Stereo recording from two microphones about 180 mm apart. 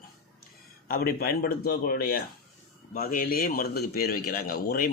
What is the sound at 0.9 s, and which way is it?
Speech, 55° left (ahead or behind).